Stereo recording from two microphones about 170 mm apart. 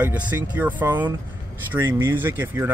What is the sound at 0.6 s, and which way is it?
Speech, 10° right (ahead or behind).